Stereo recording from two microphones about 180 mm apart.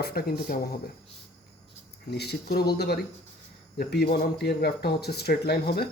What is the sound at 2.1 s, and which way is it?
Speech, 65° left (ahead or behind).